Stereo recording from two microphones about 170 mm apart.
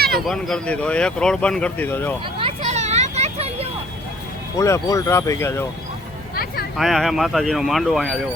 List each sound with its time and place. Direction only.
0.3 s speech: centre (ahead or behind)
2.4 s vehicle: 40° right (ahead or behind)
4.5 s speech: 20° left (ahead or behind)
6.3 s a sound: 60° left (ahead or behind)
6.7 s speech: centre (ahead or behind)